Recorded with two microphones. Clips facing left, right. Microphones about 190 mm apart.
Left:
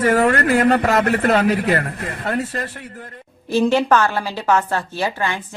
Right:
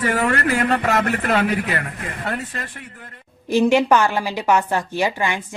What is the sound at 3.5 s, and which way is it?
Speech, 15° right (ahead or behind).